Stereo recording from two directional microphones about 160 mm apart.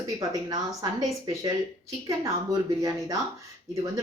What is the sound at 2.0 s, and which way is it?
Speech, 20° right (ahead or behind).